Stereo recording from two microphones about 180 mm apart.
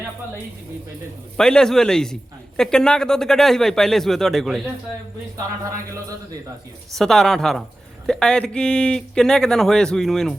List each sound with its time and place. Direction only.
1.4 s speech: 5° left (ahead or behind)
5.7 s a sound: 15° right (ahead or behind)
6.9 s speech: centre (ahead or behind)